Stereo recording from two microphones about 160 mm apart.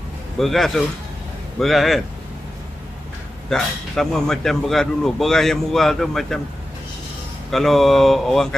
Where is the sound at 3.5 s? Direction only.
5° left (ahead or behind).